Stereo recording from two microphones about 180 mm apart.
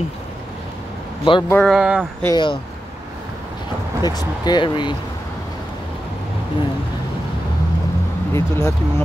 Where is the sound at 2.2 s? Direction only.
25° left (ahead or behind).